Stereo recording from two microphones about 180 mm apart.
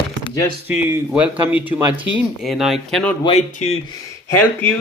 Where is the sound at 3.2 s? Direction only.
35° left (ahead or behind).